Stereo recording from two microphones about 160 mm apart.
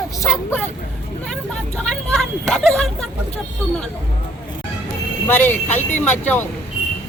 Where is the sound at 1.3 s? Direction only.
5° left (ahead or behind).